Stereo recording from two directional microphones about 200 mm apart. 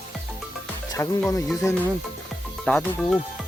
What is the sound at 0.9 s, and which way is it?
Speech, 15° left (ahead or behind).